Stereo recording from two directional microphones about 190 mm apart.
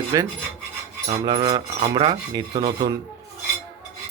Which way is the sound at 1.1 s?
30° right (ahead or behind).